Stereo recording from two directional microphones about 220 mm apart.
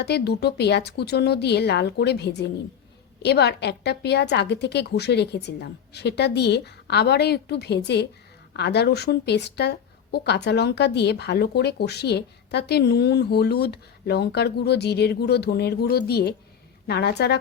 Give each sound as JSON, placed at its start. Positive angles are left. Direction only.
{"t": 0.0, "sound": "speech", "side_deg": 50}